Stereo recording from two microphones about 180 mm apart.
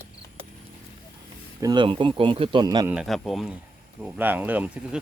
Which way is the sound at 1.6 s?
25° right (ahead or behind).